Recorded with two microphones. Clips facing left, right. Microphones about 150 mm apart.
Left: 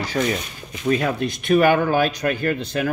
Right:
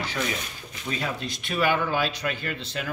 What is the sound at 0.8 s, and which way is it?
Speech, 55° left (ahead or behind).